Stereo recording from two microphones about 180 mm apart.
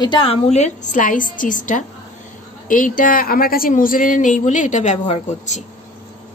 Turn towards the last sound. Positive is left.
turn(degrees=40)  # may be behind; listen again after turning